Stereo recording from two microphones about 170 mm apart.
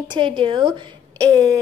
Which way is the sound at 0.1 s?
30° right (ahead or behind).